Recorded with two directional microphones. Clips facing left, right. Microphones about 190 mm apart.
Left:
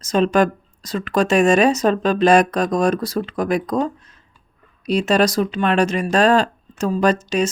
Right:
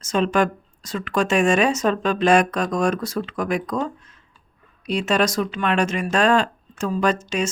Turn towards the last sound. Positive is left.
turn(degrees=35)  # may be behind; listen again after turning